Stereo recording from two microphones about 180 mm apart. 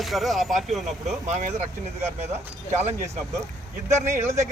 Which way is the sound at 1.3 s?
40° right (ahead or behind).